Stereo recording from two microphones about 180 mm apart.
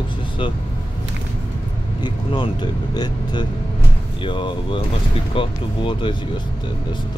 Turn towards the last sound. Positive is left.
turn(degrees=25)  # may be behind; listen again after turning